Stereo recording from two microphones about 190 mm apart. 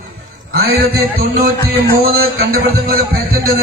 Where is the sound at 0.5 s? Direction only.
55° right (ahead or behind).